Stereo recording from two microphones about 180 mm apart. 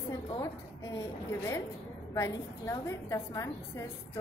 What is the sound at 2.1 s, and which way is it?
A woman's voice, 15° left (ahead or behind).